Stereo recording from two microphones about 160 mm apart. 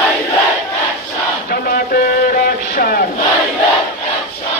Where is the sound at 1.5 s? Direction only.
70° left (ahead or behind).